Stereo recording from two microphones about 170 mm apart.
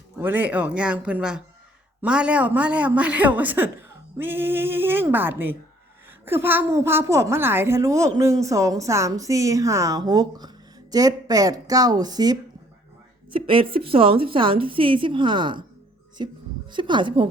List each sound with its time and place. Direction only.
0.2 s a woman's voice: 10° right (ahead or behind); by 15.6 s 25° right (ahead or behind)
16.7 s speech: 30° right (ahead or behind)